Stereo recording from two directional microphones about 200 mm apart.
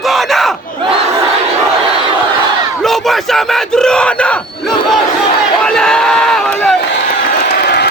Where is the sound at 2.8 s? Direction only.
Centre (ahead or behind).